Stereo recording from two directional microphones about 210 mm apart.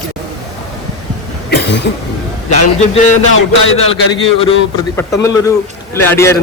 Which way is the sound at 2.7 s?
30° left (ahead or behind).